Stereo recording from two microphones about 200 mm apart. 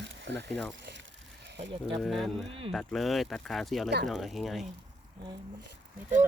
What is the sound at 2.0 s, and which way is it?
Speech, centre (ahead or behind).